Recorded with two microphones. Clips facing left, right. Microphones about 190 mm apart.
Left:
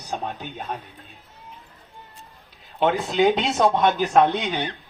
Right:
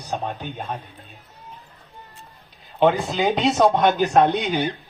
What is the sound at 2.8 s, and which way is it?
Speech, centre (ahead or behind).